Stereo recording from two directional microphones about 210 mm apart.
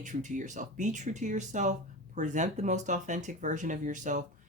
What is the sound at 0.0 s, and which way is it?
Speech, 35° right (ahead or behind).